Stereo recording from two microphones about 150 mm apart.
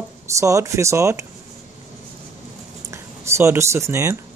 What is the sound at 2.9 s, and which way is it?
Speech, 20° right (ahead or behind).